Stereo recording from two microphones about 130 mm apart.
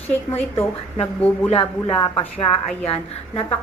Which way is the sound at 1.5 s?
45° left (ahead or behind).